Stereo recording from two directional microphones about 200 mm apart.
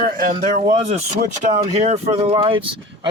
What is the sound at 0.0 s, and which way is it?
Speech, 45° right (ahead or behind).